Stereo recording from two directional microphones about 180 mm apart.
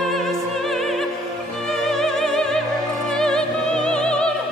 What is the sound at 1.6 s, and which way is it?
Music, centre (ahead or behind).